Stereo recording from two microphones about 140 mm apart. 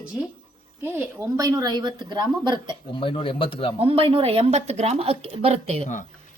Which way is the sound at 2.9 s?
35° left (ahead or behind).